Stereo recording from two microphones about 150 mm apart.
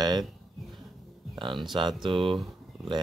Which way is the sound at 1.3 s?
30° right (ahead or behind).